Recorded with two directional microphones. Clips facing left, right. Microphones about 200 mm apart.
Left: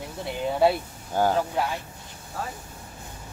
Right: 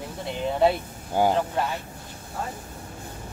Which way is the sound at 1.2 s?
10° right (ahead or behind).